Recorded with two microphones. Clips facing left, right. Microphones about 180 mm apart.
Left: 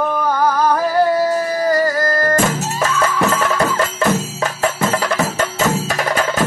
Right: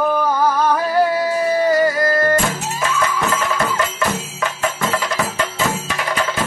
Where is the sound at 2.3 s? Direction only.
40° left (ahead or behind).